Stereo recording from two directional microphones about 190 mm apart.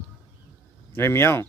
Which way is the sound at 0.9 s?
10° left (ahead or behind).